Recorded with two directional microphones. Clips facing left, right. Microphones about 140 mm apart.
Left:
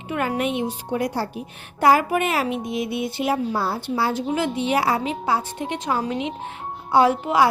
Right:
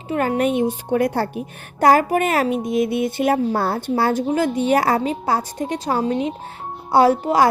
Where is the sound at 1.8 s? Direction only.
45° right (ahead or behind).